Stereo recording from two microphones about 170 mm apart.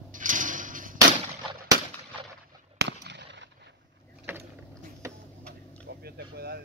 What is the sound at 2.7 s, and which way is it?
Fireworks, 80° right.